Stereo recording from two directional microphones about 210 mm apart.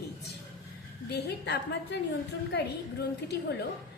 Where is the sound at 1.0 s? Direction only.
50° left (ahead or behind).